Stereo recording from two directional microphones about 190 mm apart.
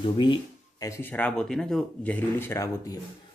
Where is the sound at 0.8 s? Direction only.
15° left (ahead or behind).